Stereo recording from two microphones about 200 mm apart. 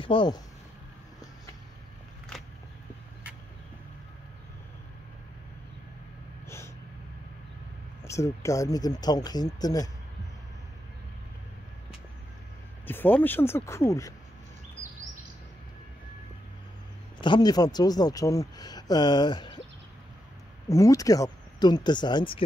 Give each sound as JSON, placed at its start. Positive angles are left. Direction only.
{"t": 0.0, "sound": "speech", "side_deg": 25}
{"t": 6.4, "sound": "vehicle", "side_deg": 15}
{"t": 8.0, "sound": "speech", "side_deg": 15}
{"t": 12.8, "sound": "speech", "side_deg": 10}
{"t": 17.2, "sound": "speech", "side_deg": 20}
{"t": 20.6, "sound": "speech", "side_deg": 15}